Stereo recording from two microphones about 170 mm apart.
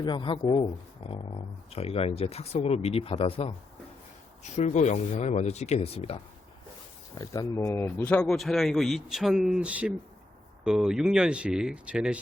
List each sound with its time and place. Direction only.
0.0 s speech: 25° left (ahead or behind)
1.7 s speech: 35° left (ahead or behind)
4.5 s speech: 40° left (ahead or behind)
7.2 s speech: 20° left (ahead or behind); by 12.2 s 5° right (ahead or behind)